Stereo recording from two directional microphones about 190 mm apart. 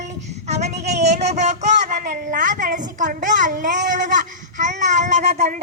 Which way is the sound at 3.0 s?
40° right (ahead or behind).